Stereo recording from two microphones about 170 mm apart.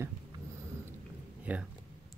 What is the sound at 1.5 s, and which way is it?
Speech, 5° right (ahead or behind).